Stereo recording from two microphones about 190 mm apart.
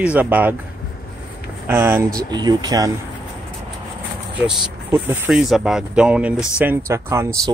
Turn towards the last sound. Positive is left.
turn(degrees=-15)  # may be behind; listen again after turning